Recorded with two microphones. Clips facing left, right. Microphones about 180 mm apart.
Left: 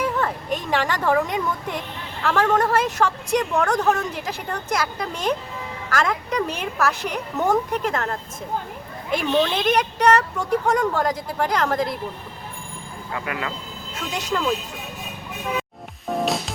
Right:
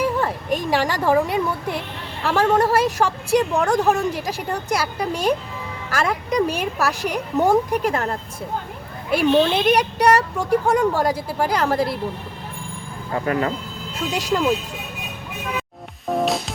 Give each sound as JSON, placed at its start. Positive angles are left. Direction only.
{"t": 0.2, "sound": "a woman's voice", "side_deg": -10}
{"t": 13.1, "sound": "speech", "side_deg": -40}
{"t": 14.3, "sound": "a woman's voice", "side_deg": -15}
{"t": 16.1, "sound": "music", "side_deg": 0}